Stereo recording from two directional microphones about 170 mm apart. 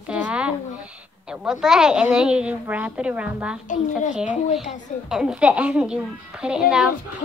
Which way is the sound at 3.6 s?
50° left (ahead or behind).